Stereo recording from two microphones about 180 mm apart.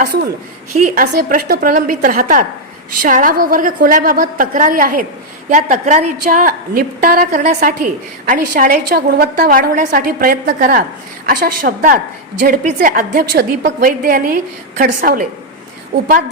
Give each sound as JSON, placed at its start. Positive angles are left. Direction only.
{"t": 0.9, "sound": "a woman's voice", "side_deg": -50}